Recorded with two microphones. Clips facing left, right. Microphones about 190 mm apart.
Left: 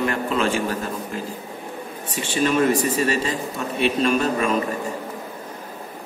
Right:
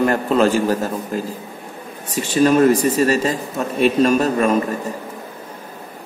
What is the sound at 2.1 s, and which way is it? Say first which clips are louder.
A man's voice: right 6 dB; 40° right (ahead or behind).